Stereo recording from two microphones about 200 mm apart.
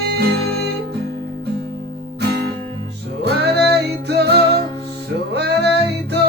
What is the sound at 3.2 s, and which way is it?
Music, 55° right (ahead or behind).